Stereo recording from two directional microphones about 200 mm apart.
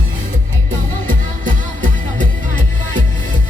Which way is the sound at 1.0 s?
40° right (ahead or behind).